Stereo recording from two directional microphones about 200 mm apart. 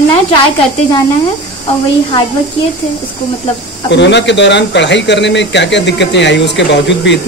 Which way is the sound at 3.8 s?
60° left (ahead or behind).